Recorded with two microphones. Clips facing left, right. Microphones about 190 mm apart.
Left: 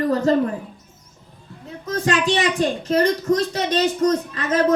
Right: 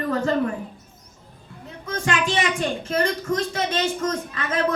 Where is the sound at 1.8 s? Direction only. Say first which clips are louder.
Left 4 dB; 35° left (ahead or behind).